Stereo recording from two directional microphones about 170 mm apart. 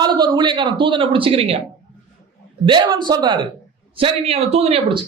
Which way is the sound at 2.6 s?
25° right (ahead or behind).